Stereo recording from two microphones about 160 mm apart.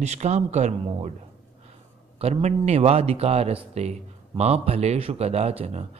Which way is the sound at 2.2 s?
45° right (ahead or behind).